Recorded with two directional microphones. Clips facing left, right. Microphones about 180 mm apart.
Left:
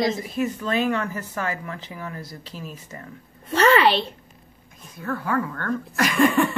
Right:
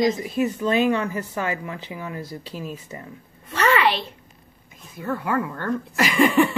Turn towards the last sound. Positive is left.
turn(degrees=0)  # may be behind; listen again after turning